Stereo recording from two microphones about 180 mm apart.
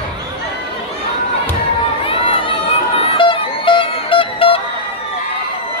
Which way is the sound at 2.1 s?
30° left (ahead or behind).